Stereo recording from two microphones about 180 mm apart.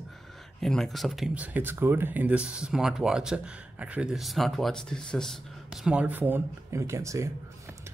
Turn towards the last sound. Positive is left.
turn(degrees=-15)  # may be behind; listen again after turning